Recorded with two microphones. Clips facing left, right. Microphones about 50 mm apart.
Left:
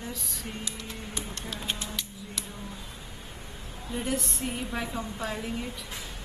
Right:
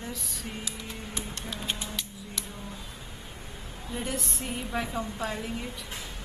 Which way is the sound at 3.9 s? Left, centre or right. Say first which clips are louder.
Left 3 dB; centre.